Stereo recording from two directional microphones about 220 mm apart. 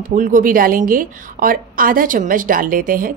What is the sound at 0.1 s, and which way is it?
A woman's voice, 40° right (ahead or behind).